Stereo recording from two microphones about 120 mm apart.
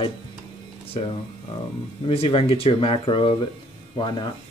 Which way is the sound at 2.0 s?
50° left (ahead or behind).